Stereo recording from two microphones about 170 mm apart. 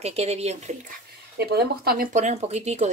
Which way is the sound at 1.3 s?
70° right (ahead or behind).